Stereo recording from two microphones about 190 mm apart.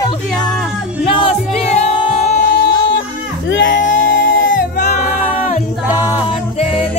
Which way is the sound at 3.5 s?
75° left (ahead or behind).